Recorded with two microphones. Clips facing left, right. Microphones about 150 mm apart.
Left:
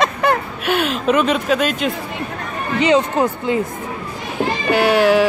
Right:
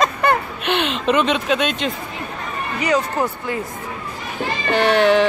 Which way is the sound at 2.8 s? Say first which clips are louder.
Left 4 dB; 20° left (ahead or behind).